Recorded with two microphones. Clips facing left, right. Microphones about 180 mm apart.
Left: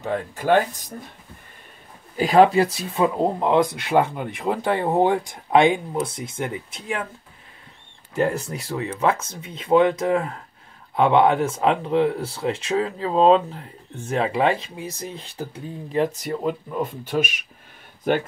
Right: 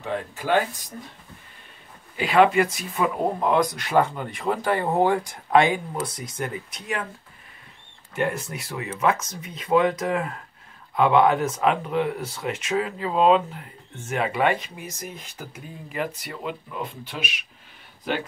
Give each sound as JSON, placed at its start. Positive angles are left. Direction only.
{"t": 2.1, "sound": "speech", "side_deg": 40}
{"t": 8.1, "sound": "speech", "side_deg": 35}